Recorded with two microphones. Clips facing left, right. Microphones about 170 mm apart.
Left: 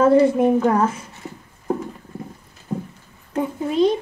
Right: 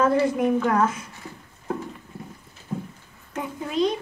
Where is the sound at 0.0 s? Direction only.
25° left (ahead or behind).